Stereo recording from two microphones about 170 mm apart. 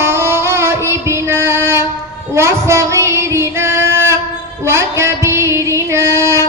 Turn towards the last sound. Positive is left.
turn(degrees=-15)  # may be behind; listen again after turning